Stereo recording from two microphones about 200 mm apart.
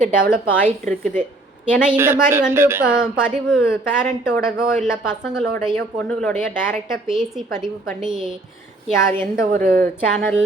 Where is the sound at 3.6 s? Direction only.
15° left (ahead or behind).